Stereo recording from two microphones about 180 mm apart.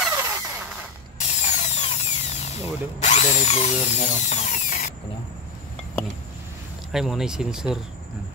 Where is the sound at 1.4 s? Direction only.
40° left (ahead or behind).